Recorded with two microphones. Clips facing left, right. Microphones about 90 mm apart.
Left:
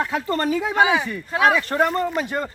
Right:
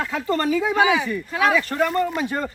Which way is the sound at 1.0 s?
35° left (ahead or behind).